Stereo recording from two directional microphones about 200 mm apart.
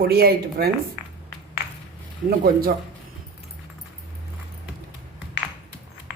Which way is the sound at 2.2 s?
50° right (ahead or behind).